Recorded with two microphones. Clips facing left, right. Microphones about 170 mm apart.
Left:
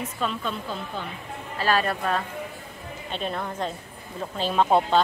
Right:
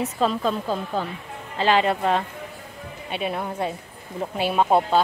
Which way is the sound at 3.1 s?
10° right (ahead or behind).